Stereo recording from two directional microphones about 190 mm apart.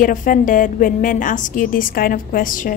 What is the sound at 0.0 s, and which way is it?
A woman's voice, 45° left (ahead or behind).